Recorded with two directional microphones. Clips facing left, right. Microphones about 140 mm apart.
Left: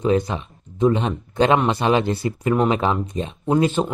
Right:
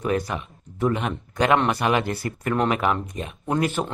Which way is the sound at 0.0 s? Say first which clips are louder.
Left 5 dB; 20° left (ahead or behind).